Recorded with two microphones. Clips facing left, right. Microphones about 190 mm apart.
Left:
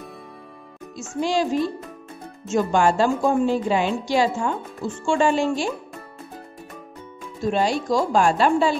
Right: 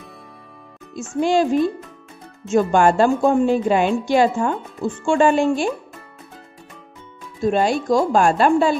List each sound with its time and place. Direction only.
0.9 s a woman's voice: 55° right (ahead or behind)
7.5 s a woman's voice: 50° right (ahead or behind)